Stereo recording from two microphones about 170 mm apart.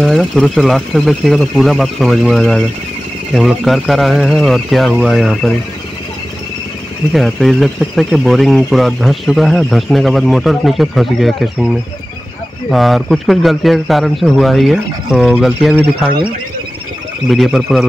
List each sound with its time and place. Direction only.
0.0 s speech: centre (ahead or behind)
7.1 s speech: centre (ahead or behind)
17.3 s speech: centre (ahead or behind)